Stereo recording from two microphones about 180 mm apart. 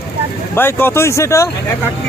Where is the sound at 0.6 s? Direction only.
10° left (ahead or behind).